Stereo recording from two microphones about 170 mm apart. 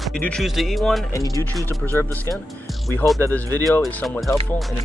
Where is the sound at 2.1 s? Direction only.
Centre (ahead or behind).